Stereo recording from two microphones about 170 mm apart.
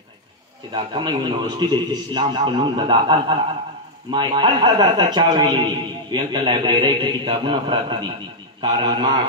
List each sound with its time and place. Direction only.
0.7 s a man's voice: 30° right (ahead or behind)